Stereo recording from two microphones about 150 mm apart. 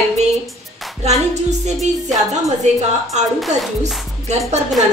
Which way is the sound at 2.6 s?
50° right (ahead or behind).